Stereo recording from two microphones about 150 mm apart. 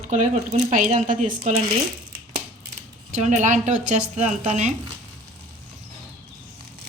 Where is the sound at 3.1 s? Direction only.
55° right (ahead or behind).